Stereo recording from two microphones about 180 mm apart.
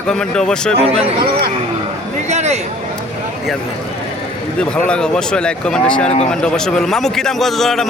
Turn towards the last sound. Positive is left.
turn(degrees=0)  # may be behind; listen again after turning